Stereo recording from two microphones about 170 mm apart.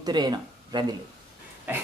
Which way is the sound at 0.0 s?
25° right (ahead or behind).